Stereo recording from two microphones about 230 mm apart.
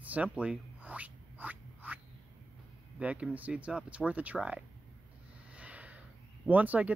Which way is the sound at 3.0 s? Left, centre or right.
Centre.